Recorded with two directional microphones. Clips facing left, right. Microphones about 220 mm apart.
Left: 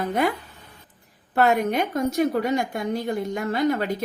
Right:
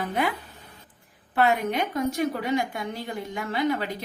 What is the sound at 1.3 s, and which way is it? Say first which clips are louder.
A woman's voice: left 3 dB; 45° left (ahead or behind).